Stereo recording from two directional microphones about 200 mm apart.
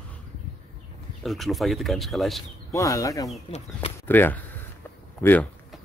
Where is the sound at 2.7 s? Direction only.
15° left (ahead or behind).